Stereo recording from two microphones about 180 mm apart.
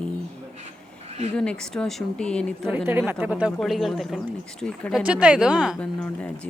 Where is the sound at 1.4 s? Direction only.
5° left (ahead or behind).